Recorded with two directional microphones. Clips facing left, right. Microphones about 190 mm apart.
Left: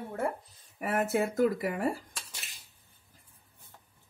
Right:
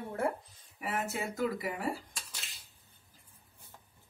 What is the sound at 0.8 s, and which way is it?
Speech, 50° left (ahead or behind).